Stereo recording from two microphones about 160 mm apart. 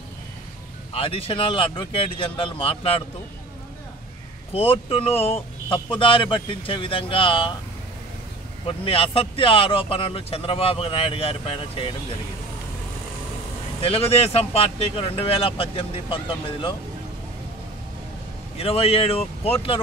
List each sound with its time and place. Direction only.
0.9 s speech: 35° left (ahead or behind)
4.6 s speech: 35° left (ahead or behind)
8.6 s speech: 35° left (ahead or behind)
13.7 s speech: 35° left (ahead or behind)
18.6 s speech: 40° left (ahead or behind)